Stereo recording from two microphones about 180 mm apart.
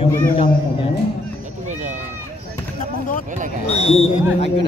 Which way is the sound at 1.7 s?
40° right (ahead or behind).